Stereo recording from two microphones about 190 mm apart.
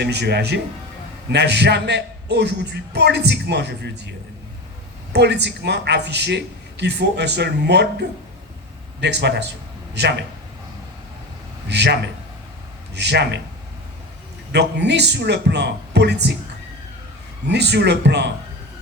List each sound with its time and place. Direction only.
0.0 s a man's voice: 60° right (ahead or behind)
5.1 s a man's voice: 65° right (ahead or behind)
9.0 s a man's voice: 65° right (ahead or behind)
11.7 s a man's voice: 65° right (ahead or behind)
14.5 s a man's voice: 65° right (ahead or behind)
17.5 s a man's voice: 65° right (ahead or behind)